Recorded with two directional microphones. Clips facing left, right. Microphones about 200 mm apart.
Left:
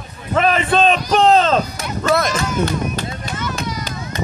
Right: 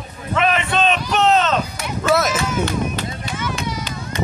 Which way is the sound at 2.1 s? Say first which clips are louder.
Even; 5° right (ahead or behind).